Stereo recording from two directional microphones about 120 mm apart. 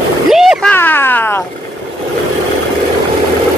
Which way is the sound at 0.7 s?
15° left (ahead or behind).